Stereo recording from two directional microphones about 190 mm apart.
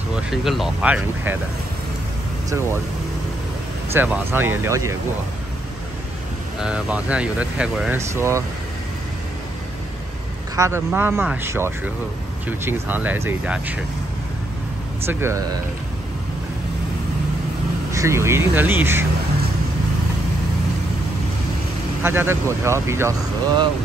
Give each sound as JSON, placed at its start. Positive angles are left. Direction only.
{"t": 0.1, "sound": "speech", "side_deg": 0}
{"t": 3.9, "sound": "speech", "side_deg": -10}
{"t": 6.6, "sound": "speech", "side_deg": -5}
{"t": 8.1, "sound": "speech", "side_deg": -15}
{"t": 10.5, "sound": "a man's voice", "side_deg": -15}
{"t": 15.0, "sound": "speech", "side_deg": -15}
{"t": 17.9, "sound": "speech", "side_deg": -15}
{"t": 22.0, "sound": "speech", "side_deg": -10}